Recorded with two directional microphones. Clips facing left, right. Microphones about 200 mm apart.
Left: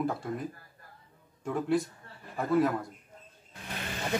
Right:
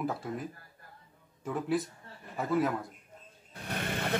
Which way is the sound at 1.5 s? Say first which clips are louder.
Left 3 dB; centre (ahead or behind).